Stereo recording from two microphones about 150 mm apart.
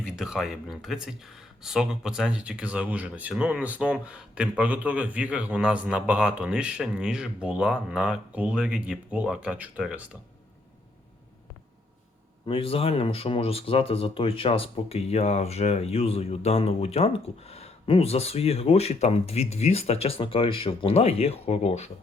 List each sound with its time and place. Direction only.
0.0 s speech: 5° right (ahead or behind)
12.5 s speech: 40° left (ahead or behind)